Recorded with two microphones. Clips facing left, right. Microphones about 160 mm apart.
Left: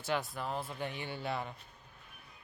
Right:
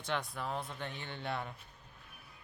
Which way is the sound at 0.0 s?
5° left (ahead or behind).